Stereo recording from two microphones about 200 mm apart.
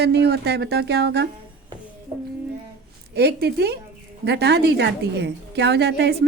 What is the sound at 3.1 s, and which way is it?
A woman's voice, 55° right (ahead or behind).